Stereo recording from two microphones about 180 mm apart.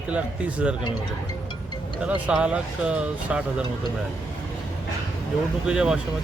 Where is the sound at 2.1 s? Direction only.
5° right (ahead or behind).